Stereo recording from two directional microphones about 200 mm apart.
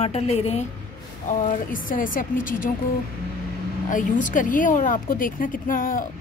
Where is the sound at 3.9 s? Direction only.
40° left (ahead or behind).